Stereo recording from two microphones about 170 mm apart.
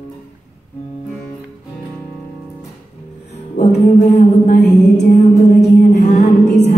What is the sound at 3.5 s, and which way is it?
Music, 45° left (ahead or behind).